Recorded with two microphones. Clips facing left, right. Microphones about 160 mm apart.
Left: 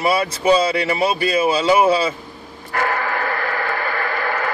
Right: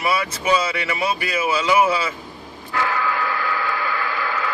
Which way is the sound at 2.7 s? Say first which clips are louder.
Left 1 dB; 50° left (ahead or behind).